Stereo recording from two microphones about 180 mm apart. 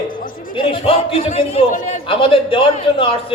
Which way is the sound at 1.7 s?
45° left (ahead or behind).